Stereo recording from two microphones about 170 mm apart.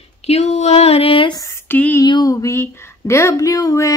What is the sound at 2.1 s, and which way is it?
Speech, 20° left (ahead or behind).